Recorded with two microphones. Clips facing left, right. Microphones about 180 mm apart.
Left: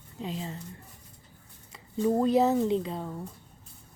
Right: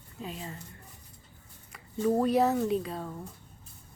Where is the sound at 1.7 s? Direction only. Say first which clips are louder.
Left 1 dB; 25° left (ahead or behind).